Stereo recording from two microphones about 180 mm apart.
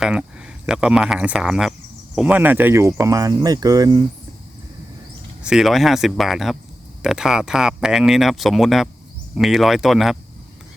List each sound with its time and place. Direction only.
0.0 s speech: 5° right (ahead or behind); by 4.0 s 20° right (ahead or behind)
5.4 s speech: 5° right (ahead or behind)